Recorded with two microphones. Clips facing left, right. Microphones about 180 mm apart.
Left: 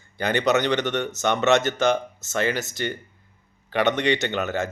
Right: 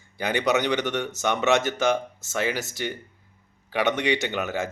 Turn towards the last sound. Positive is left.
turn(degrees=-10)  # may be behind; listen again after turning